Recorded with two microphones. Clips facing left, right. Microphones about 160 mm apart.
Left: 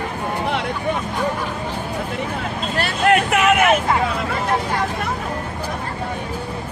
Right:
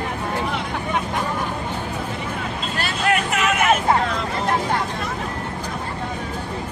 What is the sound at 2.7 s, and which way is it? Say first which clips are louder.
Vehicle: left 5 dB; 60° left (ahead or behind).